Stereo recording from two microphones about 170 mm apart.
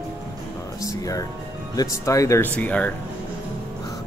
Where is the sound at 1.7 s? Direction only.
20° left (ahead or behind).